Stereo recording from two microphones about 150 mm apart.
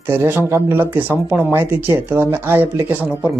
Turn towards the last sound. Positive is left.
turn(degrees=-10)  # may be behind; listen again after turning